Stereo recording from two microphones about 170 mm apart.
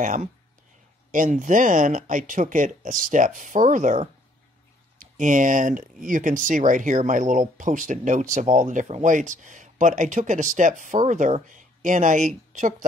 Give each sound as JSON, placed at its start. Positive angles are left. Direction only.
{"t": 0.0, "sound": "speech", "side_deg": -50}